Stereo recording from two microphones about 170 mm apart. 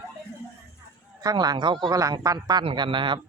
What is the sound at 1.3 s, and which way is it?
A man's voice, 25° right (ahead or behind).